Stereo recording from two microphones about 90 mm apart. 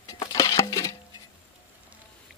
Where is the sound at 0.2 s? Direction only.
45° left (ahead or behind).